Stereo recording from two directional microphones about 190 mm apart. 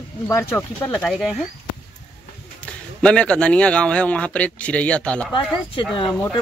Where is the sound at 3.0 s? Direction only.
5° left (ahead or behind).